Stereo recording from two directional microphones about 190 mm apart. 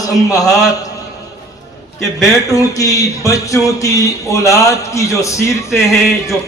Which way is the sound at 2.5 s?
15° left (ahead or behind).